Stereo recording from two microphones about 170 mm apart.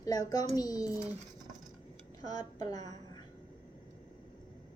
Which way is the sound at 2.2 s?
20° left (ahead or behind).